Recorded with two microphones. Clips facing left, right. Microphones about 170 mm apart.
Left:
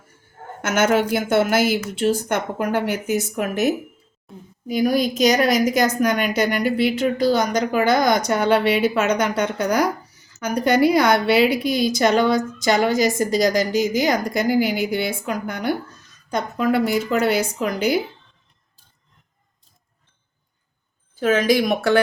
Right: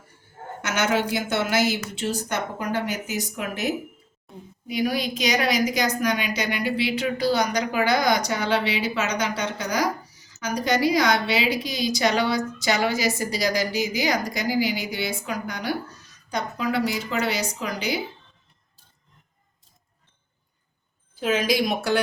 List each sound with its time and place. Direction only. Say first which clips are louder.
0.6 s a woman's voice: left 5 dB; 50° left (ahead or behind)
4.3 s a woman's voice: left 1 dB; centre (ahead or behind)
4.7 s a woman's voice: left 6 dB; 45° left (ahead or behind)
21.2 s a woman's voice: left 5 dB; 50° left (ahead or behind)